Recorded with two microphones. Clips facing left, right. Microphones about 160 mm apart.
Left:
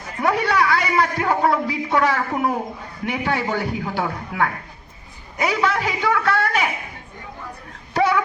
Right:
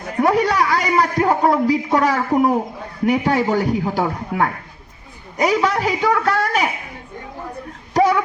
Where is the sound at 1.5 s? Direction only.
40° right (ahead or behind).